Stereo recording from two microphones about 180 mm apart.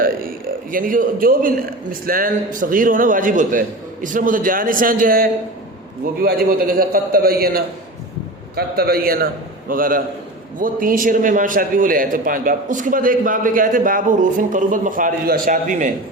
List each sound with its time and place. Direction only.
0.7 s a man's voice: 50° right (ahead or behind)